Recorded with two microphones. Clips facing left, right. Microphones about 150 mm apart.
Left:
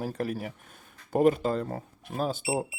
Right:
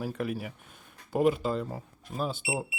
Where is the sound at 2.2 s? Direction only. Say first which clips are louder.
Left 3 dB; 40° left (ahead or behind).